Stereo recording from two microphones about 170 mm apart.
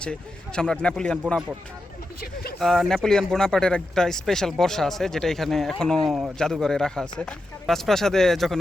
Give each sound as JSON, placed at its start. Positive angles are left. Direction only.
{"t": 0.0, "sound": "speech", "side_deg": 5}
{"t": 2.2, "sound": "a sound", "side_deg": 65}
{"t": 2.6, "sound": "speech", "side_deg": 0}